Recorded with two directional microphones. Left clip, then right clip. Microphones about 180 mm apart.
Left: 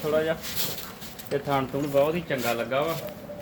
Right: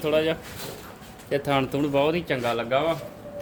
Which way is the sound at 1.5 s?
75° right (ahead or behind).